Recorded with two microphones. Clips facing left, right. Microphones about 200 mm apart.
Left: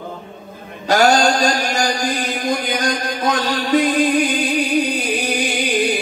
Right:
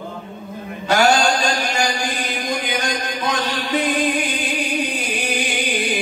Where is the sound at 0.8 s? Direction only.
40° left (ahead or behind).